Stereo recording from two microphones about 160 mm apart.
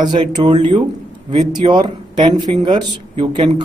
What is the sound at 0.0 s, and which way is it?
Speech, 25° right (ahead or behind).